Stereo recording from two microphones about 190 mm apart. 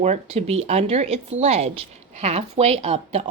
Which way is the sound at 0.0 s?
35° right (ahead or behind).